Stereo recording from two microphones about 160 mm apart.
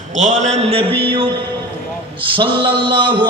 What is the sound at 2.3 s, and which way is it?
Speech, 30° right (ahead or behind).